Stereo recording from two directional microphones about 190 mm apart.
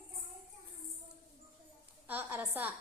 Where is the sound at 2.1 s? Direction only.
10° right (ahead or behind).